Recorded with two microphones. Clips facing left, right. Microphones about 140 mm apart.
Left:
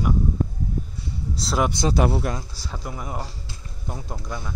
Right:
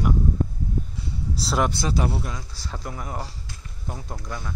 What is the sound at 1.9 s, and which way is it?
Speech, 70° left (ahead or behind).